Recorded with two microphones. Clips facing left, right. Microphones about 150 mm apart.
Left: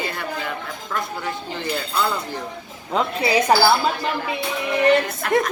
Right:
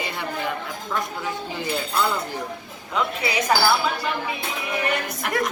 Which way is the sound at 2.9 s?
30° left (ahead or behind).